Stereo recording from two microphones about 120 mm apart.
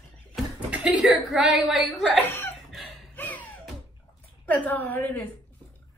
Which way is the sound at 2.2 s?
15° left (ahead or behind).